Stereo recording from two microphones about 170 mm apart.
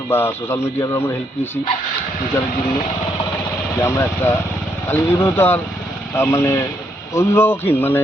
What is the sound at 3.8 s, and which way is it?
A man's voice, 15° left (ahead or behind).